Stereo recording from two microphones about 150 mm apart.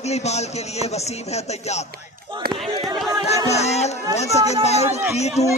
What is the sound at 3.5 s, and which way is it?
A man's voice, 45° left (ahead or behind).